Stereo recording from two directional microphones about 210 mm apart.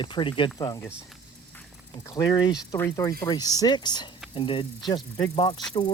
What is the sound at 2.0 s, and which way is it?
Speech, 15° left (ahead or behind).